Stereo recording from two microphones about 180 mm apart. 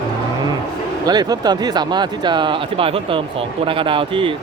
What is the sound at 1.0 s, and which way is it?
Speech, 20° right (ahead or behind).